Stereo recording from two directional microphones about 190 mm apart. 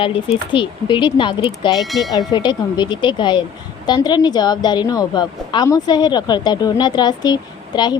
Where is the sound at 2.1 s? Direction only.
25° left (ahead or behind).